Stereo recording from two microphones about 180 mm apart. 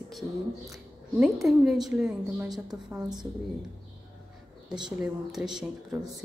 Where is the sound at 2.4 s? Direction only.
20° right (ahead or behind).